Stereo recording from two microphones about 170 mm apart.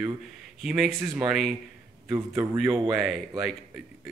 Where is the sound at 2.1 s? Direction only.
15° right (ahead or behind).